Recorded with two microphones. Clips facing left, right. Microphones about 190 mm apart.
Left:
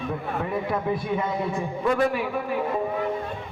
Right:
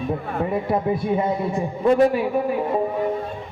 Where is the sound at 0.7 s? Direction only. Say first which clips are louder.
Right 6 dB; 30° right (ahead or behind).